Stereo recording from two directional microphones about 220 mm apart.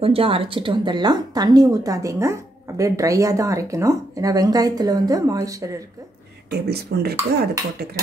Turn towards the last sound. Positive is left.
turn(degrees=-45)  # may be behind; listen again after turning